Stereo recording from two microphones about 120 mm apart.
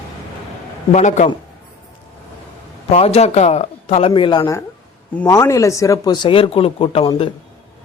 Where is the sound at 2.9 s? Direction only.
60° left (ahead or behind).